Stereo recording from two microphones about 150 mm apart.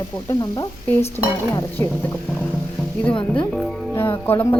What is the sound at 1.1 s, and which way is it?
Speech, 15° left (ahead or behind).